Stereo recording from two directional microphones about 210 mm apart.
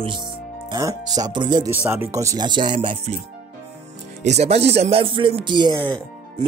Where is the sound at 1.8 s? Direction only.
10° right (ahead or behind).